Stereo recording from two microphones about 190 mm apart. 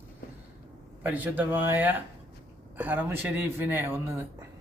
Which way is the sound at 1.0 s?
10° right (ahead or behind).